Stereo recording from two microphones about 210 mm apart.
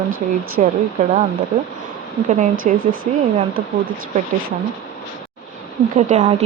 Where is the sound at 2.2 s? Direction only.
35° right (ahead or behind).